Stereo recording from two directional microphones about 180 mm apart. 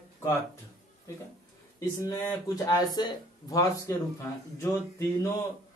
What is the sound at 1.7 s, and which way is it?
Speech, 15° left (ahead or behind).